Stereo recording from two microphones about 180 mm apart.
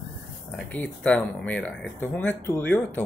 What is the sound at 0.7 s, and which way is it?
Speech, 10° left (ahead or behind).